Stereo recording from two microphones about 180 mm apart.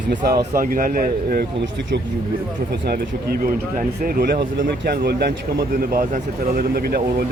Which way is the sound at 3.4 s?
50° right (ahead or behind).